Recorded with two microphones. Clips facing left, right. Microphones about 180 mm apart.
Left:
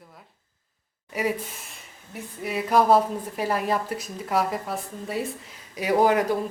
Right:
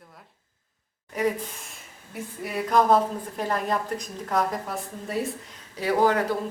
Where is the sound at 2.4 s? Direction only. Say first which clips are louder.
Left 1 dB; centre (ahead or behind).